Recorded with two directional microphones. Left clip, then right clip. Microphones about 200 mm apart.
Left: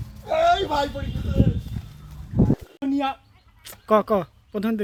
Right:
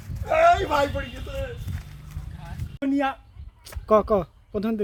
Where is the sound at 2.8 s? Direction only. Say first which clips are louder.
Right 3 dB; 5° right (ahead or behind).